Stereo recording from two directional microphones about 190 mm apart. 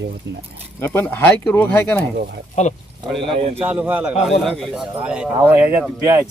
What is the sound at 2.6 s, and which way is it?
Speech, 35° left (ahead or behind).